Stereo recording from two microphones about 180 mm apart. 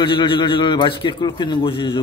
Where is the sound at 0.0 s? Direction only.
25° left (ahead or behind).